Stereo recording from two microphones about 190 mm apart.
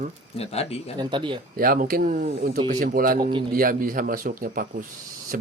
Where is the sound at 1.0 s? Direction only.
25° right (ahead or behind).